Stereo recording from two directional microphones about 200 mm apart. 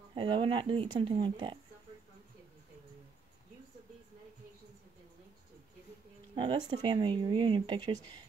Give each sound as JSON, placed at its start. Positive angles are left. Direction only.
{"t": 0.1, "sound": "speech", "side_deg": -25}
{"t": 6.3, "sound": "speech", "side_deg": -25}